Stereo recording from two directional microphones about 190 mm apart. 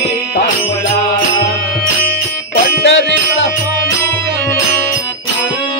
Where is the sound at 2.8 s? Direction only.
65° left (ahead or behind).